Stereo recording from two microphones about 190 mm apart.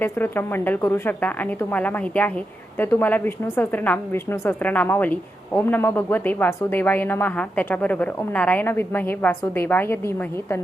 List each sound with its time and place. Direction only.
0.0 s speech: 10° left (ahead or behind)